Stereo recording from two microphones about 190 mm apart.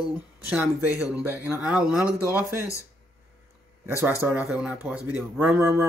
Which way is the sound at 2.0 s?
15° left (ahead or behind).